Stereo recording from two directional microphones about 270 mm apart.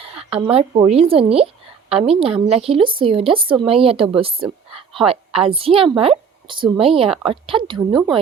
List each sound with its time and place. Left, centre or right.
0.2 s speech: right